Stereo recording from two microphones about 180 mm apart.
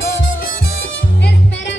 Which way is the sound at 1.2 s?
85° left.